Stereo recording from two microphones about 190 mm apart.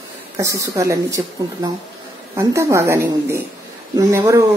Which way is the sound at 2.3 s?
15° right (ahead or behind).